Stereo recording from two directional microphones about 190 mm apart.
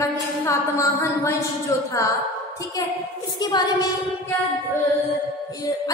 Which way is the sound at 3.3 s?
20° left (ahead or behind).